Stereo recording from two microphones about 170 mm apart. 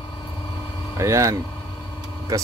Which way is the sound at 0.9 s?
15° right (ahead or behind).